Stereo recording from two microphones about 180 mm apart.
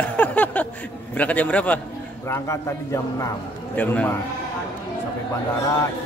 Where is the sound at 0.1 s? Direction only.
10° left (ahead or behind).